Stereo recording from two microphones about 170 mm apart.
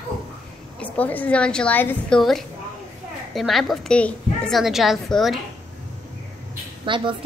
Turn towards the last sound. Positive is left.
turn(degrees=-30)  # may be behind; listen again after turning